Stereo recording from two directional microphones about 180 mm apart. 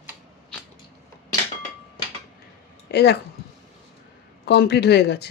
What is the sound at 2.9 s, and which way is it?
Speech, 65° left (ahead or behind).